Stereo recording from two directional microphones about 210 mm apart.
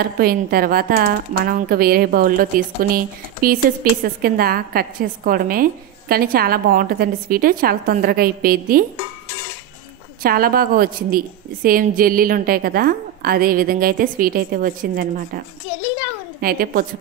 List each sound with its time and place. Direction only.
0.0 s a woman's voice: 45° right (ahead or behind)
4.0 s a woman's voice: 45° right (ahead or behind)
10.2 s a woman's voice: 45° right (ahead or behind)